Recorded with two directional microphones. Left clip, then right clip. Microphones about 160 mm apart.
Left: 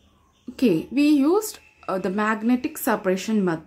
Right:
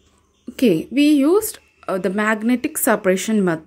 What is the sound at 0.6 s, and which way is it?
A woman's voice, 20° right (ahead or behind).